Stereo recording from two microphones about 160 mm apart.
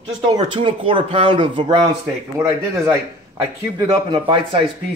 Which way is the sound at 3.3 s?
25° right (ahead or behind).